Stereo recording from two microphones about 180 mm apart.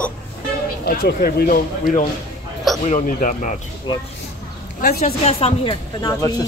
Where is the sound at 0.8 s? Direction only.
60° left (ahead or behind).